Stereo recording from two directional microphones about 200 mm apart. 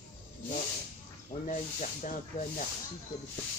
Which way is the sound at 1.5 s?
40° left (ahead or behind).